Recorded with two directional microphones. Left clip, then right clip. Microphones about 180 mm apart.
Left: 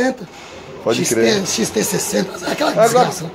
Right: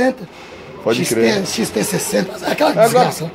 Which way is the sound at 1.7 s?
35° right (ahead or behind).